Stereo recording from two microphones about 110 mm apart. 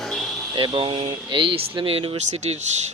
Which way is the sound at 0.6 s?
50° right (ahead or behind).